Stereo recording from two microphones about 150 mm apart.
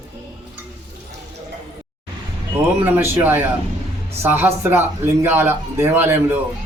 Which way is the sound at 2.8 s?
15° right (ahead or behind).